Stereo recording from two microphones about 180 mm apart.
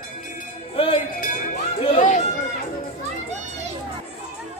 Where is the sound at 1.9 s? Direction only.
45° left (ahead or behind).